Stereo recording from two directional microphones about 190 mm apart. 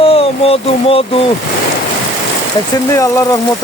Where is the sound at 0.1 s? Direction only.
30° left (ahead or behind).